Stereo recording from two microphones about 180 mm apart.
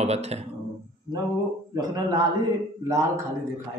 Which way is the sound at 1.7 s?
20° right (ahead or behind).